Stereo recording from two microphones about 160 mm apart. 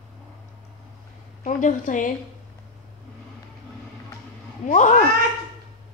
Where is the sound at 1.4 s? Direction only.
50° left (ahead or behind).